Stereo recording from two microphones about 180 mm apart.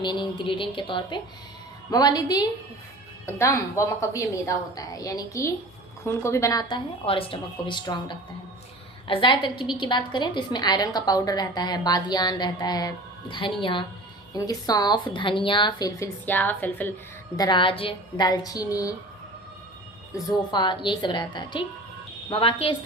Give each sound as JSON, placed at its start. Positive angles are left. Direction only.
{"t": 0.0, "sound": "a woman's voice", "side_deg": 25}
{"t": 16.2, "sound": "a woman's voice", "side_deg": 10}
{"t": 17.3, "sound": "a woman's voice", "side_deg": 25}
{"t": 20.1, "sound": "a woman's voice", "side_deg": 25}